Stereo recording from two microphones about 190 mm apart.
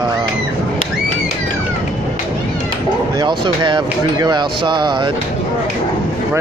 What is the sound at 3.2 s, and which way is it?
Speech, 25° right (ahead or behind).